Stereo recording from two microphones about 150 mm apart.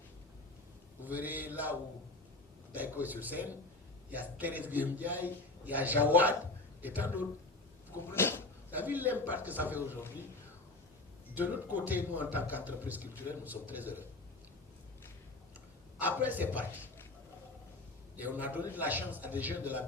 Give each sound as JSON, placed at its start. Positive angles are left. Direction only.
{"t": 1.0, "sound": "a man's voice", "side_deg": -10}
{"t": 2.7, "sound": "a man's voice", "side_deg": -10}
{"t": 8.1, "sound": "a sound", "side_deg": 15}
{"t": 8.7, "sound": "a man's voice", "side_deg": -10}
{"t": 11.3, "sound": "a man's voice", "side_deg": -10}
{"t": 16.0, "sound": "a man's voice", "side_deg": -10}
{"t": 18.2, "sound": "a man's voice", "side_deg": -10}